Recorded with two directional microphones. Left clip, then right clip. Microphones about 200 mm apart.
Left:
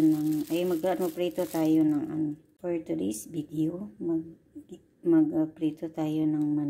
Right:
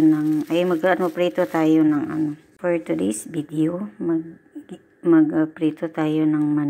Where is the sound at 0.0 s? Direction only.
Centre (ahead or behind).